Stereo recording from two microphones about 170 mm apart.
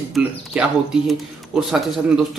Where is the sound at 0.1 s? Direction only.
5° right (ahead or behind).